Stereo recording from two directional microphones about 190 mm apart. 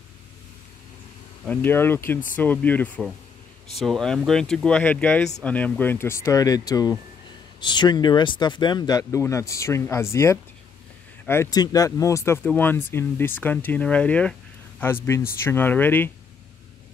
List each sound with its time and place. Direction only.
1.4 s speech: 10° left (ahead or behind)
15.4 s speech: 10° left (ahead or behind)